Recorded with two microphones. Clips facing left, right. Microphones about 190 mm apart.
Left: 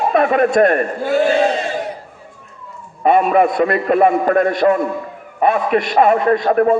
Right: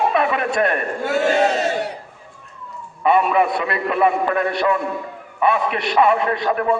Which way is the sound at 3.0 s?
40° left (ahead or behind).